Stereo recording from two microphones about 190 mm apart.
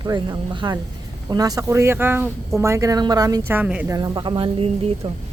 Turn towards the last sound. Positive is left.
turn(degrees=-30)  # may be behind; listen again after turning